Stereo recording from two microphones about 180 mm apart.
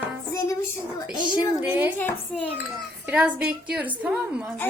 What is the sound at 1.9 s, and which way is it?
Dishes, 10° left (ahead or behind).